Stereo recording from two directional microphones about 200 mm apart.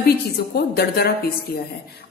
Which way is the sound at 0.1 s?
50° left (ahead or behind).